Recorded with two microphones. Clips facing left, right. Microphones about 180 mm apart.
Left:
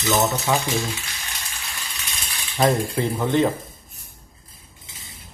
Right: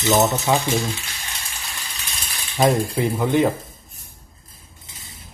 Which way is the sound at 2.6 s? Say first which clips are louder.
Right 2 dB; 15° right (ahead or behind).